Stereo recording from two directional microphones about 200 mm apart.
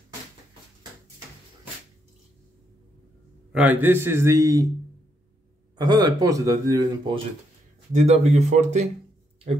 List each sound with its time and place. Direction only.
3.5 s a man's voice: 10° right (ahead or behind)
5.8 s a man's voice: 20° right (ahead or behind)
7.9 s speech: 35° right (ahead or behind)